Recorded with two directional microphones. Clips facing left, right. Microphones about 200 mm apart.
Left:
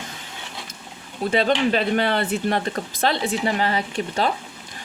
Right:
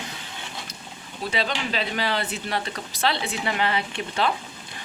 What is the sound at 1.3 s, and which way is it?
Speech, 50° left (ahead or behind).